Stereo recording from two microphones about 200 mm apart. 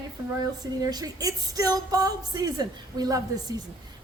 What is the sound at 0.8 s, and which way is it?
A woman's voice, 20° right (ahead or behind).